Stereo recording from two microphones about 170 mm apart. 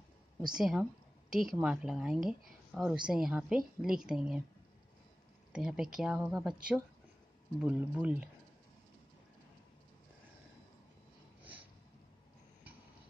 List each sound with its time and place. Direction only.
0.5 s a woman's voice: 5° right (ahead or behind)
5.5 s a woman's voice: 5° right (ahead or behind)